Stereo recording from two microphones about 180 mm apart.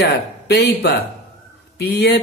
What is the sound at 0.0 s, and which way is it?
Speech, 65° left (ahead or behind).